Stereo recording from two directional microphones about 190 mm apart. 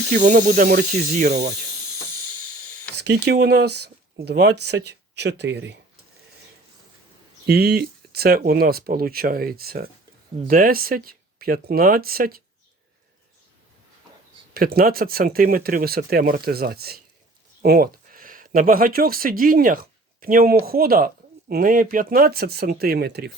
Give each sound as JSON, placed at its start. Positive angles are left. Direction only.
{"t": 0.1, "sound": "speech", "side_deg": -40}
{"t": 3.0, "sound": "speech", "side_deg": -60}
{"t": 7.4, "sound": "speech", "side_deg": -60}
{"t": 14.5, "sound": "speech", "side_deg": -50}